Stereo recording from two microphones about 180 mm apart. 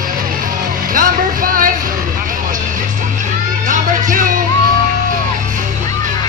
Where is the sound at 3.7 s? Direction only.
45° right (ahead or behind).